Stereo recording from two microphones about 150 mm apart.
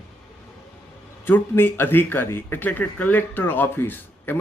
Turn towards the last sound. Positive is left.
turn(degrees=15)  # may be behind; listen again after turning